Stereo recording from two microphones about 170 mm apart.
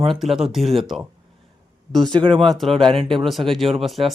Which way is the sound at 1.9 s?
Centre (ahead or behind).